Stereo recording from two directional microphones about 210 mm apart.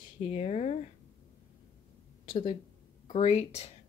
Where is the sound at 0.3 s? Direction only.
30° left (ahead or behind).